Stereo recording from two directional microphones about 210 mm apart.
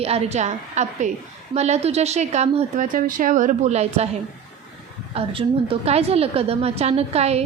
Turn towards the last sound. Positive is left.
turn(degrees=-30)  # may be behind; listen again after turning